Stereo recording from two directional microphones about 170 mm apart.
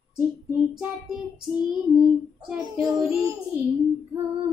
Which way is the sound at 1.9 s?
40° left (ahead or behind).